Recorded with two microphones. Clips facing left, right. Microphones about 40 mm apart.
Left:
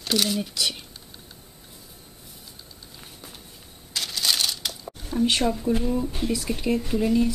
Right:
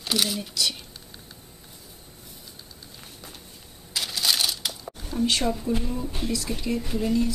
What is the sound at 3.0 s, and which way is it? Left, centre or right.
Music, centre.